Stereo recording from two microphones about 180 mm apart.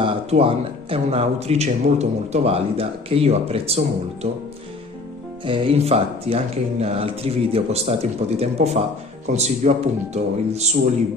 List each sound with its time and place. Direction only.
0.0 s speech: 30° right (ahead or behind)
5.4 s speech: 30° right (ahead or behind)